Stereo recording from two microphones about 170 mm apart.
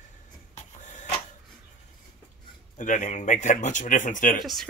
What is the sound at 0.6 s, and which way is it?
Printer, 45° left (ahead or behind).